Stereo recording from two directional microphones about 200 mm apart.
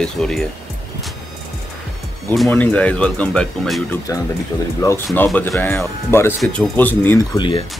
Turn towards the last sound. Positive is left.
turn(degrees=25)  # may be behind; listen again after turning